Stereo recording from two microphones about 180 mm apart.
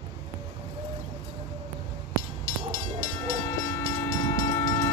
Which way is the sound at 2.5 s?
15° left (ahead or behind).